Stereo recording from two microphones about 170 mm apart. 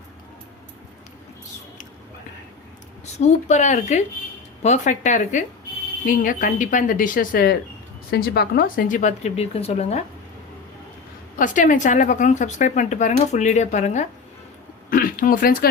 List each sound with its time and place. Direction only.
3.1 s speech: 40° left (ahead or behind)
11.3 s speech: 50° left (ahead or behind)
14.8 s a sound: 55° left (ahead or behind)